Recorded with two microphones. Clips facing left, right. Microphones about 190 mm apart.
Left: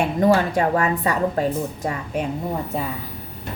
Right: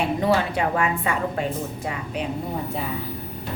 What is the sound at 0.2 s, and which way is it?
A woman's voice, 40° left (ahead or behind).